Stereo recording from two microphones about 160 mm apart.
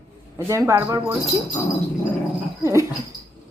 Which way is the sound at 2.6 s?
20° right (ahead or behind).